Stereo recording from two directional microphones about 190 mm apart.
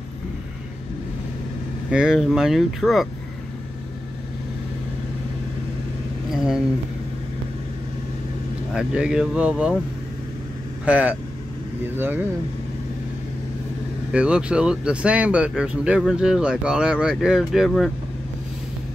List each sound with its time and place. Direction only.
1.9 s speech: 5° right (ahead or behind)
6.3 s a sound: centre (ahead or behind)
8.7 s speech: 5° right (ahead or behind)
10.9 s speech: 10° right (ahead or behind)
14.1 s speech: 5° right (ahead or behind)